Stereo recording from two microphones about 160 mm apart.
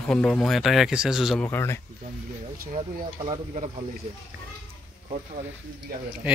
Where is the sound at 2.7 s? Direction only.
35° right (ahead or behind).